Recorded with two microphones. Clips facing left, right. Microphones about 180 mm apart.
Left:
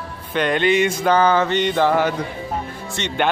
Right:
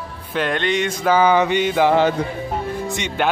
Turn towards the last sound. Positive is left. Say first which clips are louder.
# even
turn(degrees=-10)  # may be behind; listen again after turning